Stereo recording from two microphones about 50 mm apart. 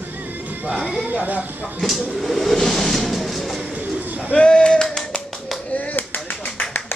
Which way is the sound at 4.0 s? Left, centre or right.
Right.